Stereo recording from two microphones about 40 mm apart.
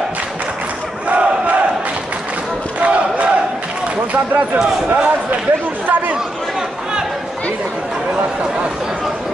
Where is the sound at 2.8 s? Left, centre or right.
Right.